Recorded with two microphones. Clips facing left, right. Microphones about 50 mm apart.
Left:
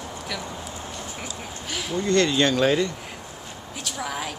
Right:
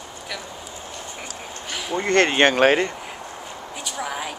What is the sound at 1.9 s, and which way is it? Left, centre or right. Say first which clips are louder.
Speech: right 3 dB; right.